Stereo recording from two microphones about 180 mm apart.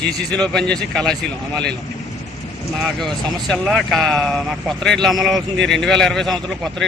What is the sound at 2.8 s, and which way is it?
Speech, centre (ahead or behind).